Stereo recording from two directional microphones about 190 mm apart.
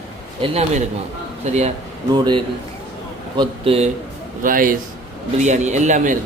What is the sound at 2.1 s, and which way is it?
Speech, 20° right (ahead or behind).